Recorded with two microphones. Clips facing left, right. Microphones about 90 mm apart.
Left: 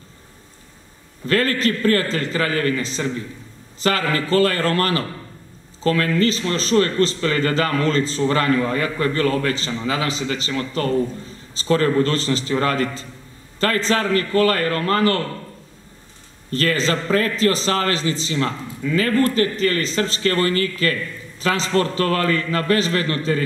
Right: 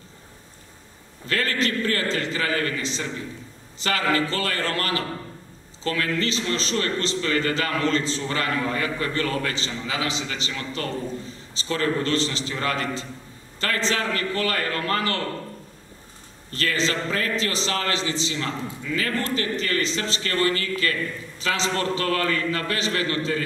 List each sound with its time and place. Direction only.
1.3 s a man's voice: 40° left (ahead or behind)
16.5 s a man's voice: 40° left (ahead or behind)